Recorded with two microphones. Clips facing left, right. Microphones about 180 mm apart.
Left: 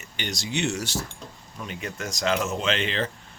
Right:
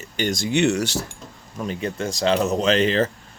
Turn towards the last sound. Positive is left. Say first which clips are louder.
# right 8 dB
turn(degrees=-40)  # may be behind; listen again after turning